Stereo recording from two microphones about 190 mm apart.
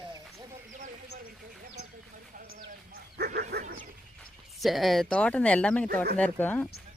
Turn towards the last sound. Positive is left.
turn(degrees=10)  # may be behind; listen again after turning